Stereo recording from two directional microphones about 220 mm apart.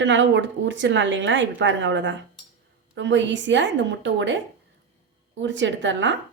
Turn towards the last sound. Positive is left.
turn(degrees=-55)  # may be behind; listen again after turning